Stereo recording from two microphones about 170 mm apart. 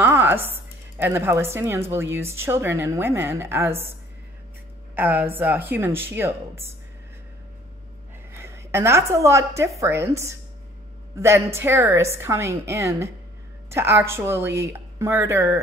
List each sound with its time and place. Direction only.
0.0 s music: 10° right (ahead or behind)
0.5 s a woman's voice: 10° right (ahead or behind)
4.9 s a woman's voice: 10° right (ahead or behind)
8.3 s a woman's voice: 15° right (ahead or behind)